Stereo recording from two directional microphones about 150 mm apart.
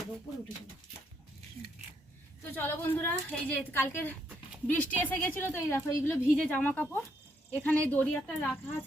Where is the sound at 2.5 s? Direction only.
15° left (ahead or behind).